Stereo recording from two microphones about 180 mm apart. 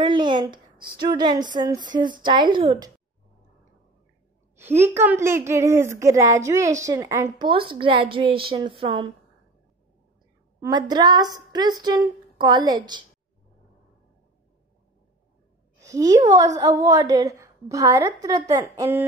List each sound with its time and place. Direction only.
0.0 s a woman's voice: 25° right (ahead or behind)
4.6 s a woman's voice: 15° right (ahead or behind)
7.4 s a woman's voice: 30° right (ahead or behind)
10.6 s a woman's voice: 20° right (ahead or behind)
15.8 s a woman's voice: 20° right (ahead or behind)